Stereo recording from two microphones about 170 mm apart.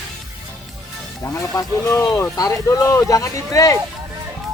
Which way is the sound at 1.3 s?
20° left (ahead or behind).